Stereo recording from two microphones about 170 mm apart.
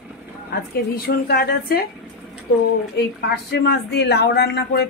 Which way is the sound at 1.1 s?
65° left (ahead or behind).